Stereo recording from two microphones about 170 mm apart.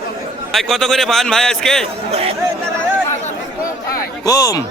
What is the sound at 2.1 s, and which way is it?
Speech, 35° right (ahead or behind).